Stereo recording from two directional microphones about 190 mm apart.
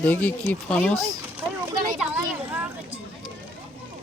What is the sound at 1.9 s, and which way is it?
Children playing, 5° right (ahead or behind).